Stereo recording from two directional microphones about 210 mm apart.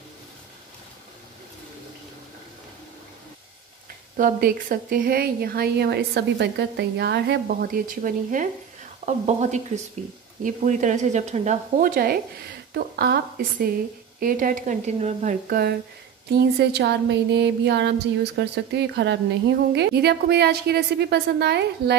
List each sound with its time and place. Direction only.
4.2 s a woman's voice: 45° right (ahead or behind)